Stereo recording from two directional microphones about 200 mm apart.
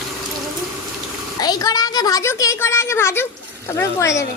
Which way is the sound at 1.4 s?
20° left (ahead or behind).